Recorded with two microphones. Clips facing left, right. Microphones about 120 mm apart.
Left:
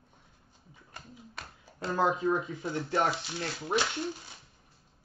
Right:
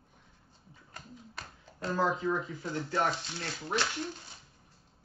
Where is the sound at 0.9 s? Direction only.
5° left (ahead or behind).